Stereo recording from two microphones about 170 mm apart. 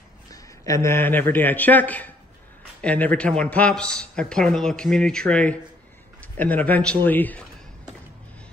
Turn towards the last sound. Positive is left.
turn(degrees=10)  # may be behind; listen again after turning